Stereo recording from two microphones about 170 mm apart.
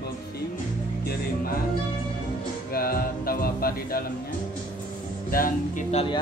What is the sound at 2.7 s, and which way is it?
Speech, 60° left (ahead or behind).